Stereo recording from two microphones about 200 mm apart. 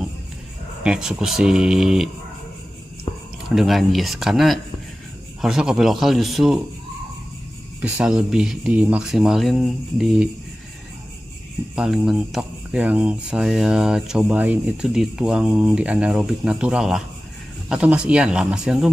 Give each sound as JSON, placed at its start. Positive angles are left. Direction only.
{"t": 0.8, "sound": "speech", "side_deg": -5}
{"t": 3.1, "sound": "a sound", "side_deg": 25}
{"t": 3.4, "sound": "speech", "side_deg": 0}
{"t": 7.8, "sound": "speech", "side_deg": -5}
{"t": 11.7, "sound": "speech", "side_deg": 0}